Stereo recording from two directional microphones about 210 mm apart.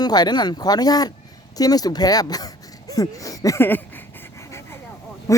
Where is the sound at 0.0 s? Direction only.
20° left (ahead or behind).